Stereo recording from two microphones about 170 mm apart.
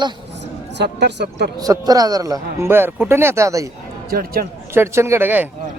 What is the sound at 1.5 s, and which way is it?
A man's voice, 20° right (ahead or behind).